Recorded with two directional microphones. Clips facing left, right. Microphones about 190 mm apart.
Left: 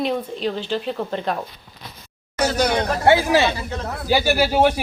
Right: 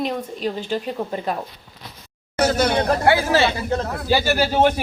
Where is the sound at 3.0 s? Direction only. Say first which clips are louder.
Left 4 dB; 20° left (ahead or behind).